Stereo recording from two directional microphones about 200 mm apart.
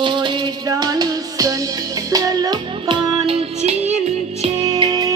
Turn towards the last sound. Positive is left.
turn(degrees=-20)  # may be behind; listen again after turning